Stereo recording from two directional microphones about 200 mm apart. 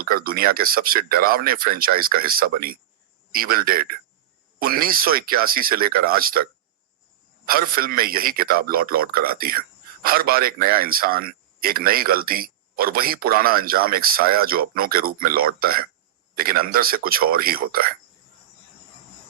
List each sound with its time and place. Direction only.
0.0 s a man's voice: 45° right (ahead or behind)
7.4 s a man's voice: 45° right (ahead or behind)